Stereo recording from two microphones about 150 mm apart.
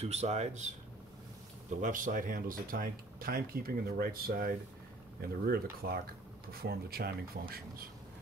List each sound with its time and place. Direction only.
0.0 s speech: 45° right (ahead or behind)
1.8 s speech: 60° right (ahead or behind)
5.4 s speech: 90° right